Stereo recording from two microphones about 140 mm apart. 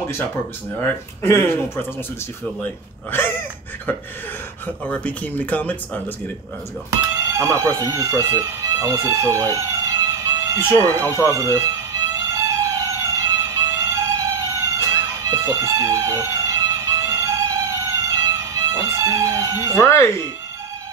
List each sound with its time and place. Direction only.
0.7 s speech: 15° left (ahead or behind)
3.1 s speech: 15° left (ahead or behind)
6.9 s speech: 25° right (ahead or behind)
11.1 s music: 20° right (ahead or behind)
19.7 s speech: 20° left (ahead or behind)